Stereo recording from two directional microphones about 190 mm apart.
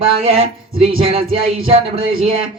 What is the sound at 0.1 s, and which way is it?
A man's voice, 30° right (ahead or behind).